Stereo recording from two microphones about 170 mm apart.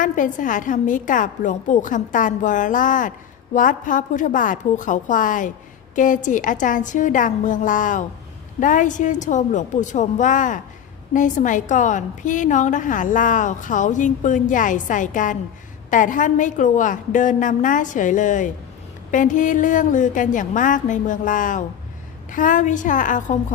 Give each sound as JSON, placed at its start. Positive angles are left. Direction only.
{"t": 0.0, "sound": "a woman's voice", "side_deg": 50}